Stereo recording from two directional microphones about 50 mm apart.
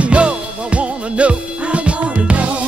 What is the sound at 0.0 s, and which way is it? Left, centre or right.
Music, right.